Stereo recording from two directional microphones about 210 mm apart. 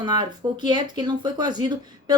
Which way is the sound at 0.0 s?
20° right (ahead or behind).